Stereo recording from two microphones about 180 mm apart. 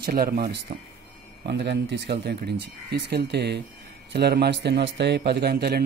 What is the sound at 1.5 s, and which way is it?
A man's voice, 70° right (ahead or behind).